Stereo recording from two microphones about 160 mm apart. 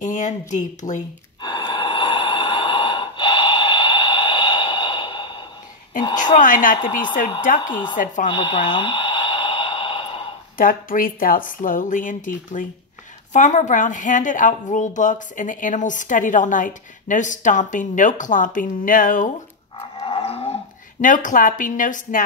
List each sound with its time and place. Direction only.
0.0 s a woman's voice: 50° left (ahead or behind)
1.4 s snort: 30° left (ahead or behind)
6.3 s speech: 55° left (ahead or behind)
7.5 s speech: 30° left (ahead or behind)
7.9 s a woman's voice: 55° left (ahead or behind)
8.3 s a sound: 30° left (ahead or behind)
10.6 s a woman's voice: 60° left (ahead or behind)
20.0 s livestock: 40° left (ahead or behind)
21.0 s speech: 55° left (ahead or behind)